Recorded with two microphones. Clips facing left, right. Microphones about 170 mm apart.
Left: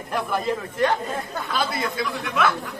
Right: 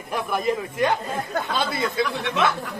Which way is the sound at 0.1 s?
10° right (ahead or behind).